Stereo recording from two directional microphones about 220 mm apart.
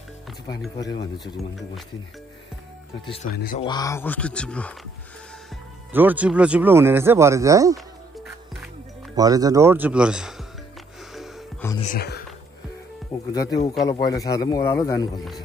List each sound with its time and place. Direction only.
3.3 s speech: 40° left (ahead or behind)
3.6 s a man's voice: 15° left (ahead or behind)
5.9 s speech: 5° right (ahead or behind)
9.1 s speech: 15° right (ahead or behind)
11.8 s speech: 40° left (ahead or behind)
13.3 s a man's voice: 15° left (ahead or behind)